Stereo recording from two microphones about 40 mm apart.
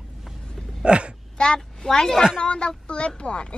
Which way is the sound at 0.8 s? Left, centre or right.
Right.